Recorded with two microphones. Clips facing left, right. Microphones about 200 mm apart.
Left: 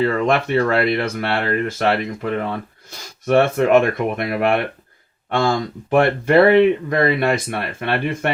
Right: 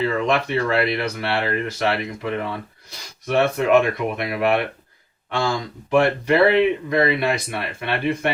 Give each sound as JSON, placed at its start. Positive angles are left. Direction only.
{"t": 0.0, "sound": "speech", "side_deg": 50}